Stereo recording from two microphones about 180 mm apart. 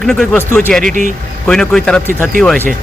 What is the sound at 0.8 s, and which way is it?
Speech, 45° right (ahead or behind).